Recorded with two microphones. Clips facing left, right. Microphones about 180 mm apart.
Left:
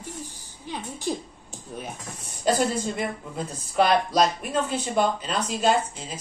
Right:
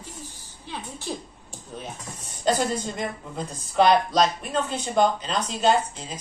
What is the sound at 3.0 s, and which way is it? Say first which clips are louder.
A woman's voice: left 1 dB; 5° left (ahead or behind).